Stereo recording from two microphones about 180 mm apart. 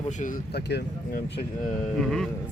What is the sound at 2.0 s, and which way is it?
Speech, centre (ahead or behind).